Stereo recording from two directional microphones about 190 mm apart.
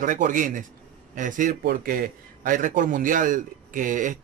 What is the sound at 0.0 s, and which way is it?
Speech, 45° right (ahead or behind).